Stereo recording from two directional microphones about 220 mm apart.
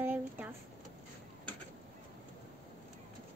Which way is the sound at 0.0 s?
10° right (ahead or behind).